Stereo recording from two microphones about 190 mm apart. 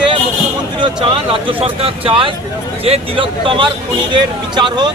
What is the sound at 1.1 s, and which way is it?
A man's voice, 25° right (ahead or behind).